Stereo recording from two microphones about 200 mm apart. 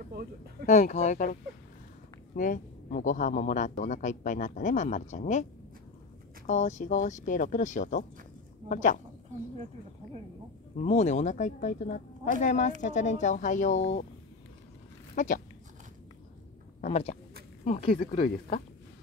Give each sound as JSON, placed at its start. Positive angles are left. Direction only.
{"t": 0.7, "sound": "a man's voice", "side_deg": 35}
{"t": 10.8, "sound": "a man's voice", "side_deg": 35}
{"t": 15.1, "sound": "a man's voice", "side_deg": 40}
{"t": 16.8, "sound": "a man's voice", "side_deg": 30}